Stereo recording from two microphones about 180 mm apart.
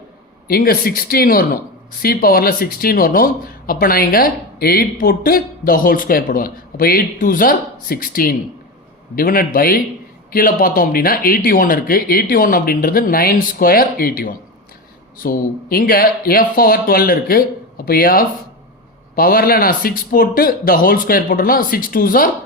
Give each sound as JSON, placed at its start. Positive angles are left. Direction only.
{"t": 0.4, "sound": "speech", "side_deg": 55}